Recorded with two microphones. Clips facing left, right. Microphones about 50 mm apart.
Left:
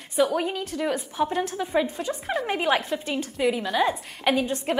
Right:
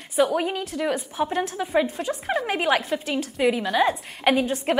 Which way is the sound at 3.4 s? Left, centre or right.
Centre.